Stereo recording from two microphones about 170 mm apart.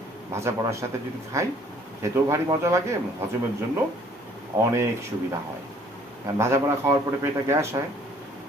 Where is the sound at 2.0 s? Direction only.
15° right (ahead or behind).